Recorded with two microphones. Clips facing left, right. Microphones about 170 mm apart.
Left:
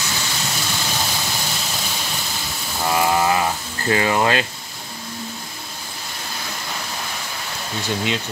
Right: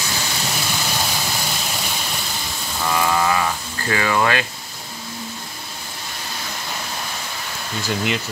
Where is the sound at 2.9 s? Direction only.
25° left (ahead or behind).